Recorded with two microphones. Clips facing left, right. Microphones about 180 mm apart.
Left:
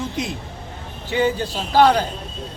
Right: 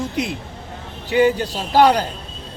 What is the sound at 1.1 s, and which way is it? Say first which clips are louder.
Speech: right 4 dB; 15° right (ahead or behind).